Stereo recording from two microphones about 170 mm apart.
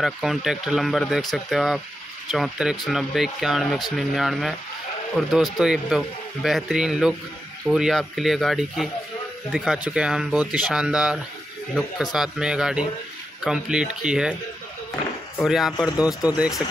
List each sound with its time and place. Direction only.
0.0 s speech: centre (ahead or behind)
15.4 s speech: centre (ahead or behind)
16.0 s speech: 20° left (ahead or behind)